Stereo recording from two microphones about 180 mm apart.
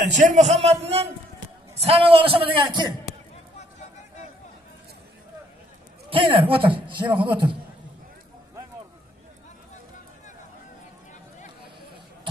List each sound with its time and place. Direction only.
0.1 s a man's voice: 40° right (ahead or behind); by 2.9 s 25° right (ahead or behind)
6.0 s a man's voice: 30° right (ahead or behind)